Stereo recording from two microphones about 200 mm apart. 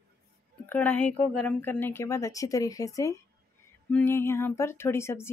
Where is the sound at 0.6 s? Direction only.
10° left (ahead or behind).